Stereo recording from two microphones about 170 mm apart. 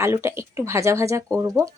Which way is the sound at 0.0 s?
15° right (ahead or behind).